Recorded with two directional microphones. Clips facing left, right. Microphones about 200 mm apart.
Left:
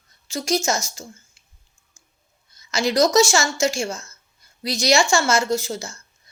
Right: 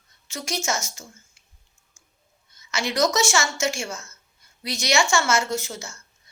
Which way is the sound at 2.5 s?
35° left (ahead or behind).